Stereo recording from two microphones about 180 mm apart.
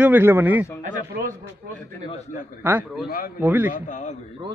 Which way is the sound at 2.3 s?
10° right (ahead or behind).